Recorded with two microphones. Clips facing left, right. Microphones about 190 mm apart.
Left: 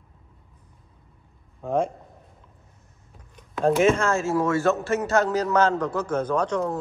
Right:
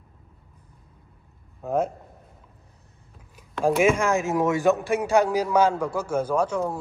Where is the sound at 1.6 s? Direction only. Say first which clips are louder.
Even; 5° right (ahead or behind).